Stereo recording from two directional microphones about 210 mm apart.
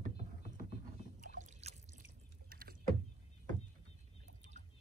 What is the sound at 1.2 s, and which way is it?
Boat, 35° right (ahead or behind).